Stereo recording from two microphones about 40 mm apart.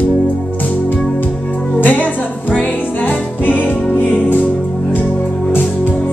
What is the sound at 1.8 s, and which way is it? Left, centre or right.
Music, left.